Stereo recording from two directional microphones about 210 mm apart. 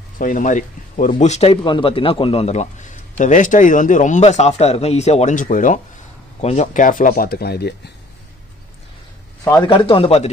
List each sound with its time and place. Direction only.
0.2 s a man's voice: 40° left (ahead or behind)
9.4 s a man's voice: 20° left (ahead or behind)